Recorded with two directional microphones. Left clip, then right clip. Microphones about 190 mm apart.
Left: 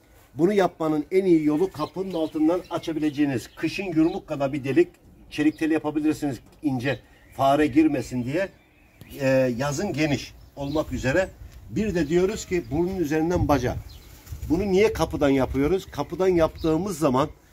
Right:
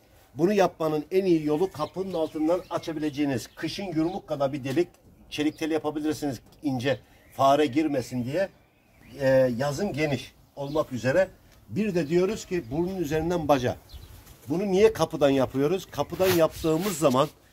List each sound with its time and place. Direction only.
0.4 s speech: 10° right (ahead or behind)
10.7 s speech: 15° right (ahead or behind)
12.7 s speech: 25° right (ahead or behind)